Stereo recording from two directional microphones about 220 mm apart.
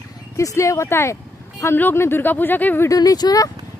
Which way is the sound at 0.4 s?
15° left (ahead or behind).